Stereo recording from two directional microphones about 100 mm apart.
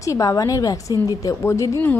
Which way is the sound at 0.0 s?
35° left (ahead or behind).